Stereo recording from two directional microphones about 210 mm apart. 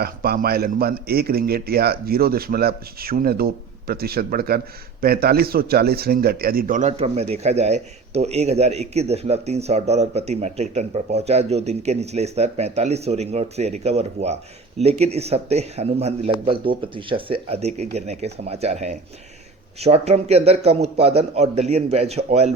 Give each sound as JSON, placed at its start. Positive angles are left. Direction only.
{"t": 0.0, "sound": "speech", "side_deg": -45}